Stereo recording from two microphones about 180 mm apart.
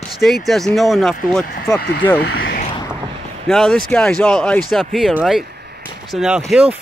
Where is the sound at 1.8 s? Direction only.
60° left (ahead or behind).